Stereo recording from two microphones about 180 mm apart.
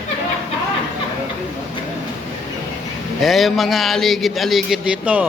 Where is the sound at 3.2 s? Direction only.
Centre (ahead or behind).